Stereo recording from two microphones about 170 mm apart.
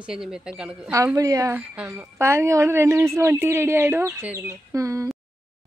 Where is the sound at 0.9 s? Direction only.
20° right (ahead or behind).